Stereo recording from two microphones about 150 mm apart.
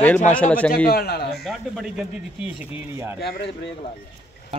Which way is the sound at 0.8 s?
90° left.